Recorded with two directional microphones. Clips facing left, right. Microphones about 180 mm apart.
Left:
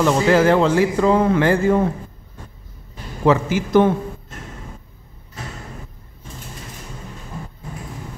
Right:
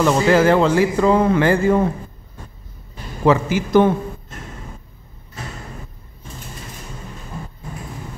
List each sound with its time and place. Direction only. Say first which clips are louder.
0.0 s a man's voice: right 1 dB; 5° right (ahead or behind)
3.3 s a man's voice: right 1 dB; 10° right (ahead or behind)